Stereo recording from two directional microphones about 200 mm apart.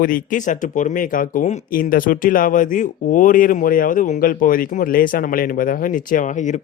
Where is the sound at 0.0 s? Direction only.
45° left (ahead or behind).